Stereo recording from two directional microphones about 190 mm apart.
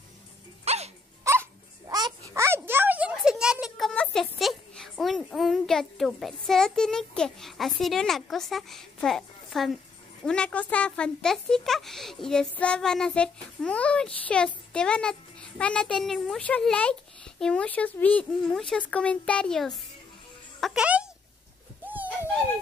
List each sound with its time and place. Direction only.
0.7 s music: 35° right (ahead or behind)
1.2 s a sound: 15° right (ahead or behind)
10.2 s speech: 5° left (ahead or behind)
21.8 s dog: 10° right (ahead or behind)